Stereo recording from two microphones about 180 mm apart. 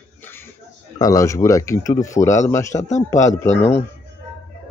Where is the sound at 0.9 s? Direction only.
20° left (ahead or behind).